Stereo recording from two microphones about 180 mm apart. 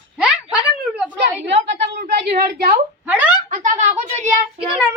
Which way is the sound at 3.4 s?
45° right (ahead or behind).